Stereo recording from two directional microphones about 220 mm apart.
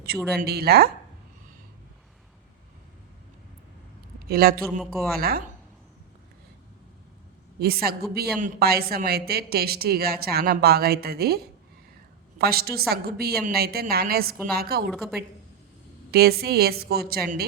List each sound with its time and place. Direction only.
0.2 s speech: centre (ahead or behind)
0.4 s a woman's voice: 45° right (ahead or behind)
4.3 s a woman's voice: 45° right (ahead or behind)
4.8 s speech: centre (ahead or behind)
5.1 s a woman's voice: 45° right (ahead or behind)
7.6 s a woman's voice: 45° right (ahead or behind)
12.4 s a woman's voice: 45° right (ahead or behind)
14.9 s speech: centre (ahead or behind)
16.1 s a woman's voice: 45° right (ahead or behind)